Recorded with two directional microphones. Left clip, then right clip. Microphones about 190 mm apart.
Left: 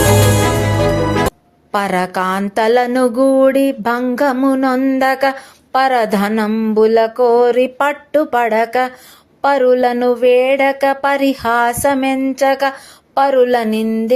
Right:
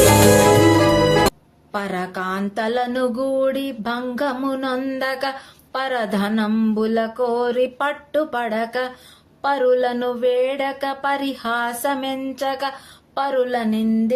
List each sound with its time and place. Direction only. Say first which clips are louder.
0.0 s music: right 1 dB; centre (ahead or behind)
1.7 s speech: left 9 dB; 40° left (ahead or behind)